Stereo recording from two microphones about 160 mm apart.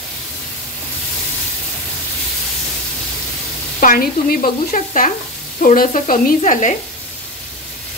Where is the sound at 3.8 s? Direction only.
65° left (ahead or behind).